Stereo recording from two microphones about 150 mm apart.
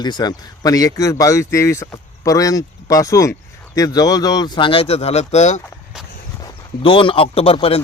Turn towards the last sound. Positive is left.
turn(degrees=40)  # may be behind; listen again after turning